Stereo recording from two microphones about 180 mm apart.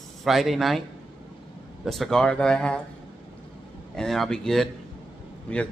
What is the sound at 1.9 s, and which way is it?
Speech, centre (ahead or behind).